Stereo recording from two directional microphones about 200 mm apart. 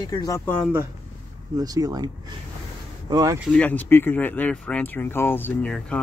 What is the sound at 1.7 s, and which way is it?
Speech, 20° right (ahead or behind).